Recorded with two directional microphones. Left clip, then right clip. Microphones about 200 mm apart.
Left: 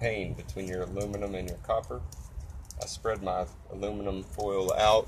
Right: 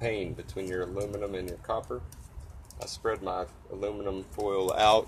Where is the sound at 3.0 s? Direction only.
20° right (ahead or behind).